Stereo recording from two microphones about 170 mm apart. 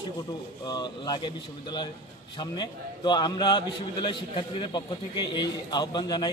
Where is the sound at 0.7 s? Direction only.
25° left (ahead or behind).